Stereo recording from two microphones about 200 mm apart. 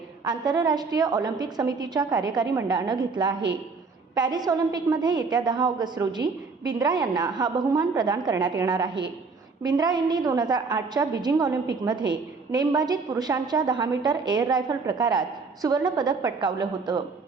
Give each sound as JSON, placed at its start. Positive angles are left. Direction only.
{"t": 0.3, "sound": "a woman's voice", "side_deg": -20}